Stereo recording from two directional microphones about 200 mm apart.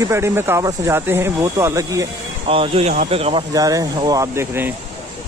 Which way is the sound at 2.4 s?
30° right (ahead or behind).